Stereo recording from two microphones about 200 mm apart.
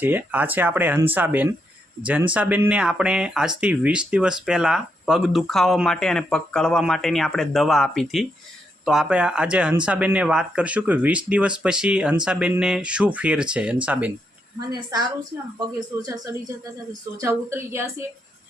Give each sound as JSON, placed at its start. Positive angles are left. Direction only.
{"t": 0.0, "sound": "speech", "side_deg": -10}
{"t": 14.7, "sound": "a woman's voice", "side_deg": -20}